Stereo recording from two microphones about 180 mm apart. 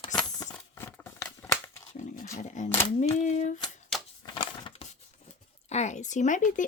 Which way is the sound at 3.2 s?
40° left (ahead or behind).